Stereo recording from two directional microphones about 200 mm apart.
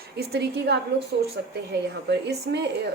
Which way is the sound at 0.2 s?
55° right (ahead or behind).